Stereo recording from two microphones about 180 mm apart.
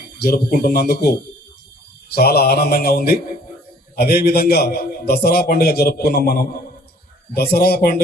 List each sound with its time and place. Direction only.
0.2 s a man's voice: 60° left (ahead or behind)
2.1 s a man's voice: 60° left (ahead or behind)